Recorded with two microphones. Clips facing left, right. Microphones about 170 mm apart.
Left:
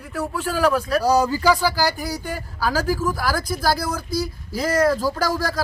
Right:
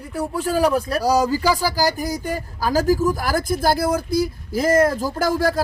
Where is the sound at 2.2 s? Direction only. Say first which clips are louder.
Right 2 dB; 45° right (ahead or behind).